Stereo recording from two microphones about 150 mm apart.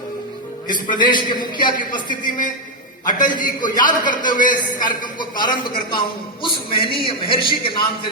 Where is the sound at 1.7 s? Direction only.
65° left (ahead or behind).